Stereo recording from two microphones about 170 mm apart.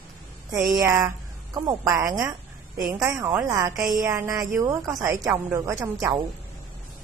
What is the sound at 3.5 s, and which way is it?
A woman's voice, 20° right (ahead or behind).